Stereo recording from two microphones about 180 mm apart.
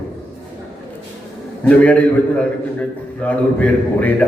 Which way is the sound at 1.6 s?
10° left (ahead or behind).